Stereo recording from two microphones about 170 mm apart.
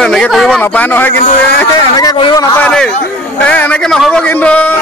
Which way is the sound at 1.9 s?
25° left (ahead or behind).